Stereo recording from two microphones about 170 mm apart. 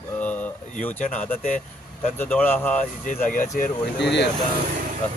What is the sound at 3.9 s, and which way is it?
Speech, 90° left.